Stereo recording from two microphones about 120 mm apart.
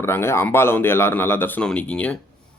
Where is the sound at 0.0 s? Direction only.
20° left (ahead or behind).